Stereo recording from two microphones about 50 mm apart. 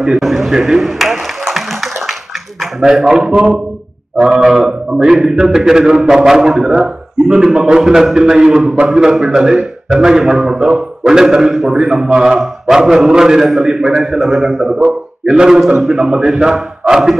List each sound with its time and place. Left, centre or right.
0.2 s a sound: centre
2.6 s a man's voice: centre
4.3 s a man's voice: right; by 6.8 s centre
6.8 s a man's voice: centre